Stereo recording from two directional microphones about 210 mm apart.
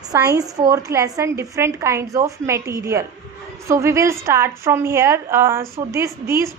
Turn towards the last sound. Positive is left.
turn(degrees=-15)  # may be behind; listen again after turning